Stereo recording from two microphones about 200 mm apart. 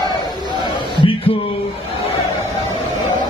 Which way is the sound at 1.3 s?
30° left (ahead or behind).